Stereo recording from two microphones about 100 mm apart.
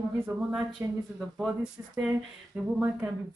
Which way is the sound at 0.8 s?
30° right (ahead or behind).